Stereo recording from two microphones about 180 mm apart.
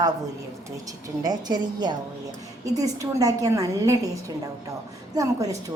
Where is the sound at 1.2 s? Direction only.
20° right (ahead or behind).